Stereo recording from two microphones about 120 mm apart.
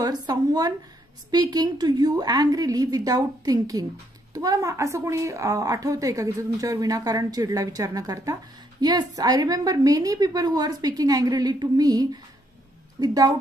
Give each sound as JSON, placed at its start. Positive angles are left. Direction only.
{"t": 0.0, "sound": "a woman's voice", "side_deg": -35}